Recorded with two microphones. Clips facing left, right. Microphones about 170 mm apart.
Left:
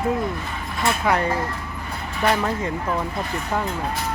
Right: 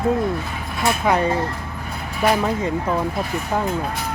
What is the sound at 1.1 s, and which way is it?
Speech, 20° right (ahead or behind).